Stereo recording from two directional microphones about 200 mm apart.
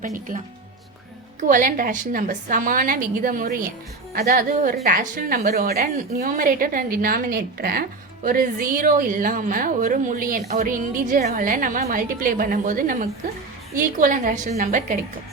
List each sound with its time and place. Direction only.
0.0 s a woman's voice: 40° right (ahead or behind)